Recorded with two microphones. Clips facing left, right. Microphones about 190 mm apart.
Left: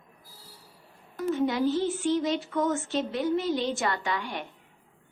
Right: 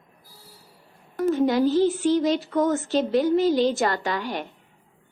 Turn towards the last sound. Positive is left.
turn(degrees=-40)  # may be behind; listen again after turning